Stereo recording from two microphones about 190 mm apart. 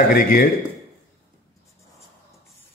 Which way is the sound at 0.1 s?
50° left (ahead or behind).